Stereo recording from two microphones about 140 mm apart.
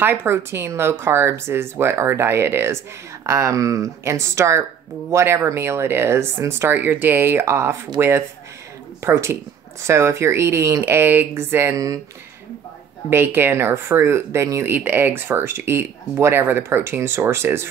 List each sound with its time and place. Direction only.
0.0 s speech: 15° right (ahead or behind)
13.1 s speech: 15° right (ahead or behind)